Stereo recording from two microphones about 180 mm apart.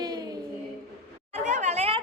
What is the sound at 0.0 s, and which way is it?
Child singing, 20° right (ahead or behind).